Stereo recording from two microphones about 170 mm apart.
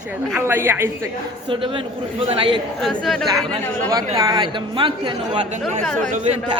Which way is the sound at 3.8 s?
20° right (ahead or behind).